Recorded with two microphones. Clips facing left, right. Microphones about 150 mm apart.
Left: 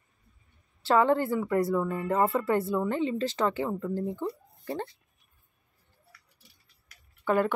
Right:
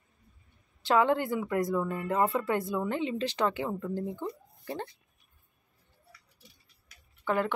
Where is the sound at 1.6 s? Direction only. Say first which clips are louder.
Left 2 dB; 10° left (ahead or behind).